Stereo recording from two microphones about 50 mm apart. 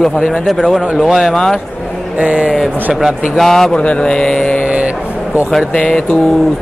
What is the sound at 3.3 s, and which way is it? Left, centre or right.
Mantra, centre.